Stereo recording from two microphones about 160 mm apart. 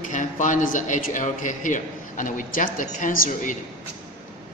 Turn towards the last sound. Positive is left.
turn(degrees=55)  # may be behind; listen again after turning